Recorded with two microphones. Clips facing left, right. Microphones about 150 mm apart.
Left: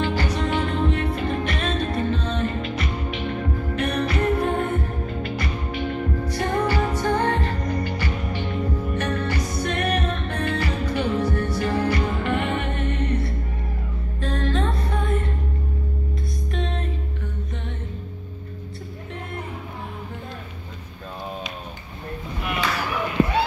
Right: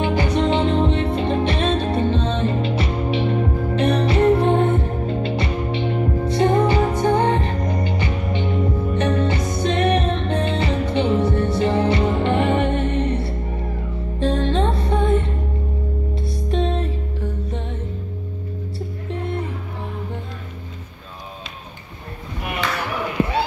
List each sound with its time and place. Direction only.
0.0 s music: 20° right (ahead or behind)